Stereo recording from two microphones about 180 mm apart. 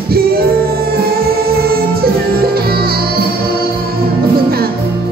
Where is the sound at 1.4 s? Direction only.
55° right (ahead or behind).